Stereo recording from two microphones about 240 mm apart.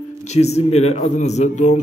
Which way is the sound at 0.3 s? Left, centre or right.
Left.